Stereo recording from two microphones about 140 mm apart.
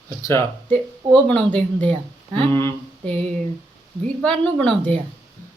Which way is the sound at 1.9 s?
35° right (ahead or behind).